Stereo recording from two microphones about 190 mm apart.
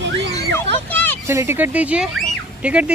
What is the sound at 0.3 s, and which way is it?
Children playing, 20° left (ahead or behind).